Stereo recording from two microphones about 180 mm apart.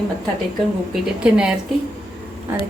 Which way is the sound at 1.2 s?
5° right (ahead or behind).